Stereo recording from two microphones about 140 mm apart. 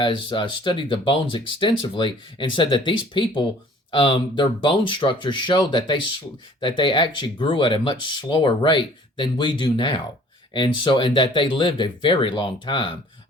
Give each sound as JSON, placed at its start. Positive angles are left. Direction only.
{"t": 0.0, "sound": "speech", "side_deg": 35}